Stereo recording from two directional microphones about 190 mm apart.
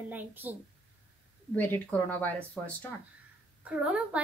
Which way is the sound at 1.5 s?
10° left (ahead or behind).